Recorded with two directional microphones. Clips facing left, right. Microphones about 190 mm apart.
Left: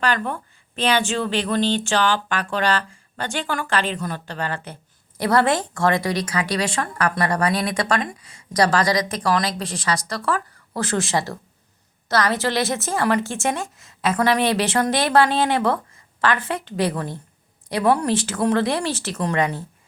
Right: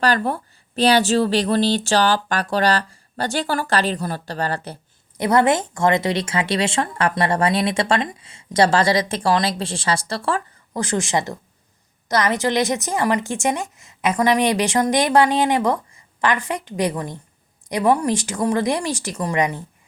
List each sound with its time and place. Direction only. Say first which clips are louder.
0.0 s speech: right 3 dB; 35° right (ahead or behind)
5.1 s speech: right 2 dB; 20° right (ahead or behind)
10.8 s a woman's voice: right 1 dB; 15° right (ahead or behind)